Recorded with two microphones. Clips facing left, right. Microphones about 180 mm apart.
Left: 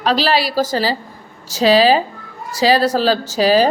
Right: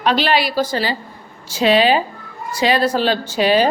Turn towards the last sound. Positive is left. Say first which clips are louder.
# left 2 dB
turn(degrees=35)  # may be behind; listen again after turning